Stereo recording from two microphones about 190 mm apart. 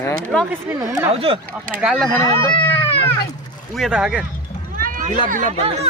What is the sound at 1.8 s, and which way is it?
Speech, centre (ahead or behind).